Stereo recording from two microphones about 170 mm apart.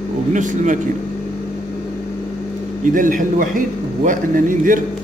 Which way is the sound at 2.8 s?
50° right (ahead or behind).